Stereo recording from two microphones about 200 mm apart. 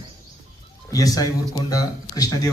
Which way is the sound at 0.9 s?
15° left (ahead or behind).